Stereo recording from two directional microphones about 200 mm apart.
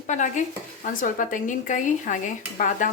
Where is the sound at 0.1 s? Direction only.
40° left (ahead or behind).